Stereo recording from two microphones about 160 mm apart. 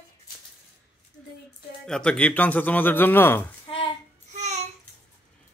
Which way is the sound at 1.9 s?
5° left (ahead or behind).